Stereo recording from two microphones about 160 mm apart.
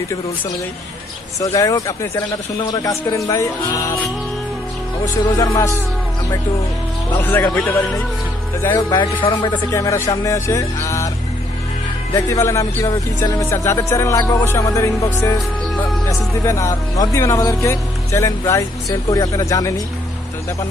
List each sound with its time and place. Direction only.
1.4 s speech: 20° left (ahead or behind)
5.0 s speech: 20° left (ahead or behind)
7.2 s speech: 10° left (ahead or behind)
8.9 s speech: 30° left (ahead or behind)
12.1 s speech: 20° left (ahead or behind)